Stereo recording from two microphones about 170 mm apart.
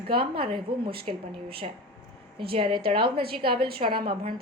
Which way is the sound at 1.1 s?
45° right (ahead or behind).